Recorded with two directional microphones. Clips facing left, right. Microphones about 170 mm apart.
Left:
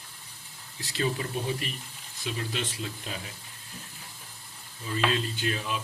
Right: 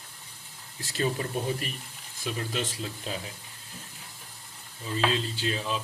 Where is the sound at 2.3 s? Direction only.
45° right (ahead or behind).